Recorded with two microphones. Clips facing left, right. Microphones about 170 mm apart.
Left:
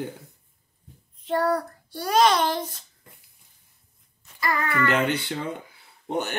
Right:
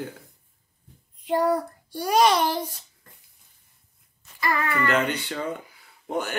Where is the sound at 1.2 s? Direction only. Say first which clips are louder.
Right 1 dB; 15° right (ahead or behind).